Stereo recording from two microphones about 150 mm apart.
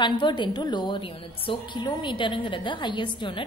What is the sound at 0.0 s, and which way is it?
A woman's voice, 30° left (ahead or behind).